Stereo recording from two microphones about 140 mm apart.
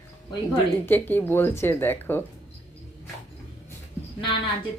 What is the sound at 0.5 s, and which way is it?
Speech, 15° left (ahead or behind).